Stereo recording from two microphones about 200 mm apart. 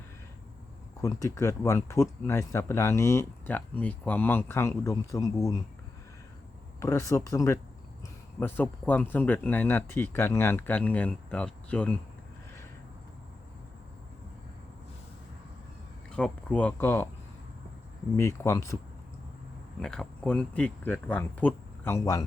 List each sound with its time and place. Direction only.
1.0 s speech: 15° left (ahead or behind)
6.8 s speech: 15° left (ahead or behind)
16.0 s speech: 5° left (ahead or behind)
18.2 s speech: 15° left (ahead or behind)
19.8 s speech: 5° left (ahead or behind)